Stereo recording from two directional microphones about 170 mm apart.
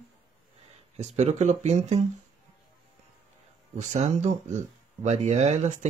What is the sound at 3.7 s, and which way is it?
Speech, 45° right (ahead or behind).